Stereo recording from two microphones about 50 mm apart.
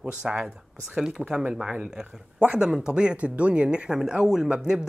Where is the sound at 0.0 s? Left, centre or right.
Centre.